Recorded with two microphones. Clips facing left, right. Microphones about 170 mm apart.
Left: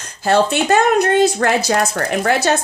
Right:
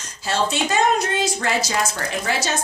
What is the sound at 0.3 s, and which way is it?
Speech, 60° left (ahead or behind).